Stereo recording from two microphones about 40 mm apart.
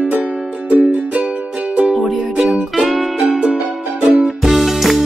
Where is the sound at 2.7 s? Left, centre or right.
Centre.